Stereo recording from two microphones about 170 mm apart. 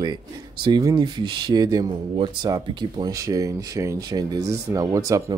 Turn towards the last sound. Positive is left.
turn(degrees=-20)  # may be behind; listen again after turning